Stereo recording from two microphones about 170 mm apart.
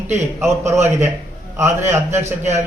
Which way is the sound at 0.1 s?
15° right (ahead or behind).